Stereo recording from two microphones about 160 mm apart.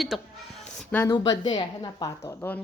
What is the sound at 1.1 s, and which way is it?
A woman's voice, 25° left (ahead or behind).